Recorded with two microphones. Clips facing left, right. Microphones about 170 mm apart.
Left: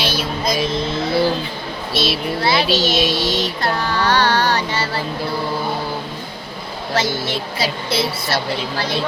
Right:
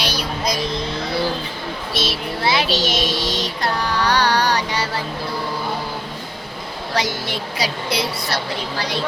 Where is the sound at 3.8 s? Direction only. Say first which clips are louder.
Left 1 dB; 15° right (ahead or behind).